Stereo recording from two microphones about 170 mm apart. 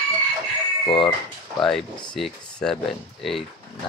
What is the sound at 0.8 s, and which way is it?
Speech, 30° left (ahead or behind).